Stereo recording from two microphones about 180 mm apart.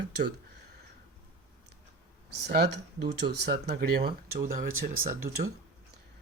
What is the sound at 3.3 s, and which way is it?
Speech, 70° right (ahead or behind).